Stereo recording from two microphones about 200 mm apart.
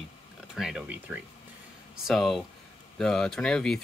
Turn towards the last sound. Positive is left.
turn(degrees=5)  # may be behind; listen again after turning